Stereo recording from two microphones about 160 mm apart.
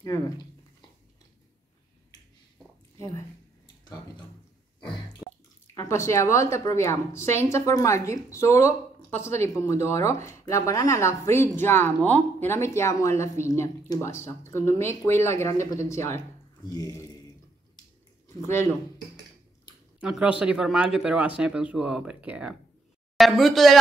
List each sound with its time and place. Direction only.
3.0 s a sound: 20° left (ahead or behind)
5.2 s water: 5° left (ahead or behind)
5.8 s a woman's voice: 20° left (ahead or behind)
18.4 s speech: 15° left (ahead or behind)
20.0 s speech: 5° right (ahead or behind)